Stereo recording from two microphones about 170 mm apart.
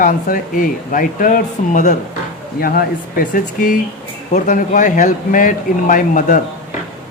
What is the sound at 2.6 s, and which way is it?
Speech, 60° left (ahead or behind).